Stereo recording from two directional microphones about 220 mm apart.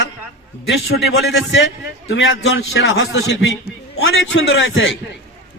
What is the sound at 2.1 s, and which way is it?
A man's voice, 60° left (ahead or behind).